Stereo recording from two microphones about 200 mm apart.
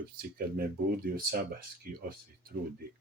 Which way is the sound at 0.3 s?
50° right (ahead or behind).